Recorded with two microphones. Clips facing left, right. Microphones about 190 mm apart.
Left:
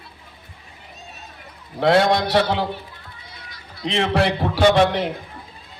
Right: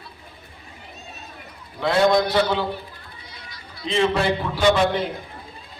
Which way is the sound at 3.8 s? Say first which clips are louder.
Even; 75° left (ahead or behind).